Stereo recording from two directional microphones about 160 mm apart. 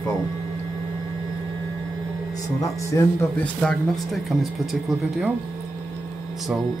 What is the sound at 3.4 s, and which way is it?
Speech, 5° left (ahead or behind).